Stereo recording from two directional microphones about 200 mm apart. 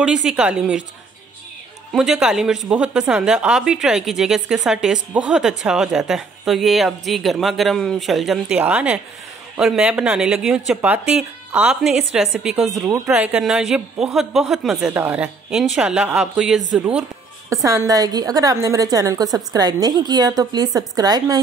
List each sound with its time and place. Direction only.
0.0 s speech: 5° right (ahead or behind)
1.9 s speech: centre (ahead or behind)
17.6 s a woman's voice: 15° right (ahead or behind)